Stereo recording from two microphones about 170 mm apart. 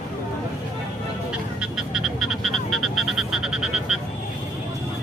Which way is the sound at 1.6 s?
Centre (ahead or behind).